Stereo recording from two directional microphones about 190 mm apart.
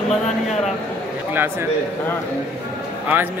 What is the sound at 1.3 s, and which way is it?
Speech, 10° right (ahead or behind).